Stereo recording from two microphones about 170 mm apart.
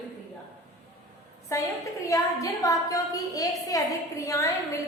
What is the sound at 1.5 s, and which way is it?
A woman's voice, 20° left (ahead or behind).